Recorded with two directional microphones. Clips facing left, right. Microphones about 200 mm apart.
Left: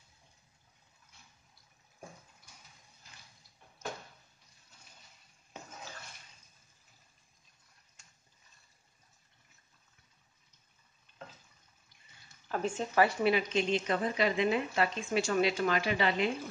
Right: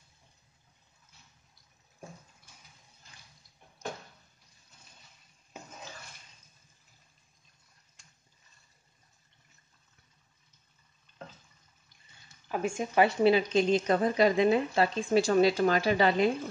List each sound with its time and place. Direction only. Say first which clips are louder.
12.4 s speech: right 2 dB; 10° right (ahead or behind); by 16.3 s 40° right (ahead or behind)